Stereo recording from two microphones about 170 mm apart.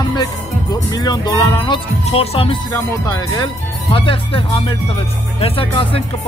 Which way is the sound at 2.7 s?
20° left (ahead or behind).